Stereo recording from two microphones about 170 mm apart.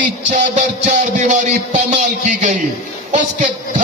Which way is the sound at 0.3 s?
45° right (ahead or behind).